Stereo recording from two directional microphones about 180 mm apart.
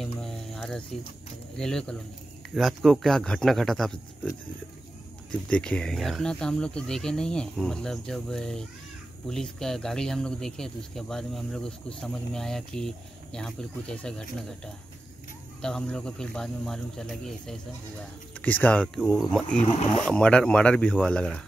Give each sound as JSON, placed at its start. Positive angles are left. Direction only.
{"t": 0.2, "sound": "music", "side_deg": 0}
{"t": 1.6, "sound": "speech", "side_deg": 5}
{"t": 5.5, "sound": "speech", "side_deg": 5}